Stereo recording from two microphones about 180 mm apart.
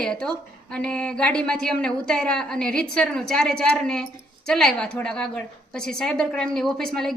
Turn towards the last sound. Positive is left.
turn(degrees=5)  # may be behind; listen again after turning